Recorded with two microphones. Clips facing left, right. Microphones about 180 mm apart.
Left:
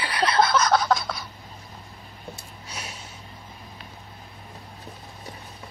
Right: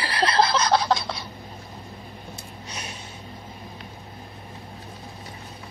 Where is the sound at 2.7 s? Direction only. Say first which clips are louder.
Right 1 dB; 10° left (ahead or behind).